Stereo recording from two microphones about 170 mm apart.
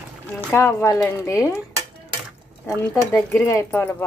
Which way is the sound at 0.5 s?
15° left (ahead or behind).